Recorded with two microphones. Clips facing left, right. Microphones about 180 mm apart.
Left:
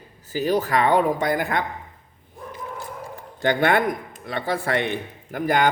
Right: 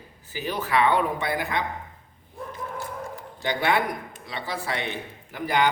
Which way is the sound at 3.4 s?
50° left (ahead or behind).